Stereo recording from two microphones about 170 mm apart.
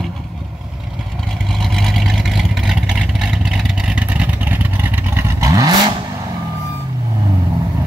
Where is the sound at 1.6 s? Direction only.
Centre (ahead or behind); by 5.9 s 20° right (ahead or behind).